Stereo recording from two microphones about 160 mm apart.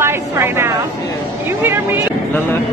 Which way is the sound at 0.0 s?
15° right (ahead or behind).